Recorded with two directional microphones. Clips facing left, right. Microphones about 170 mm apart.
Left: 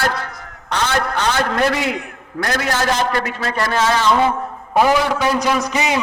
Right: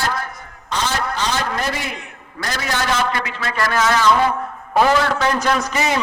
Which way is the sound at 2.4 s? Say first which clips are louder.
Left 4 dB; 55° left (ahead or behind).